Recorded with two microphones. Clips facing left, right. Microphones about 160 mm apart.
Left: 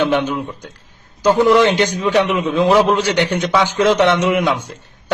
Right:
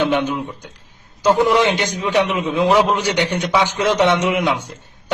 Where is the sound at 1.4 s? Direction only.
15° right (ahead or behind).